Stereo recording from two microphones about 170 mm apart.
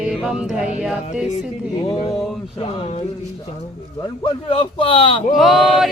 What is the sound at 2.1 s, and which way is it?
Speech, centre (ahead or behind).